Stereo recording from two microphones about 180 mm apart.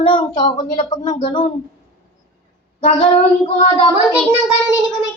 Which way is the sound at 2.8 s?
35° left (ahead or behind).